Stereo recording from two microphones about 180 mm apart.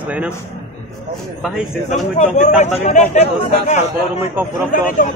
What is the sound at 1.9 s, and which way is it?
A man's voice, 40° left (ahead or behind).